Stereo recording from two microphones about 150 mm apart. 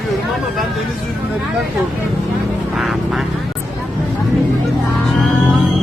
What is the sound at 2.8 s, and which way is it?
Vehicle, centre (ahead or behind).